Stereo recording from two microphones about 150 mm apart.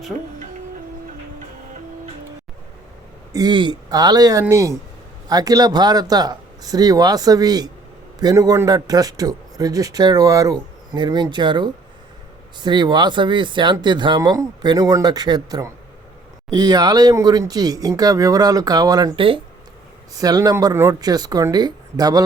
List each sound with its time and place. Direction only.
3.3 s a man's voice: 30° right (ahead or behind)
20.1 s a man's voice: 25° right (ahead or behind)